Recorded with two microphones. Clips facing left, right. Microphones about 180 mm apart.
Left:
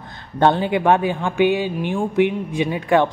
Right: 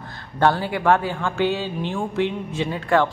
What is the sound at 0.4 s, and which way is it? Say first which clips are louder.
A woman's voice: left 3 dB; 20° left (ahead or behind).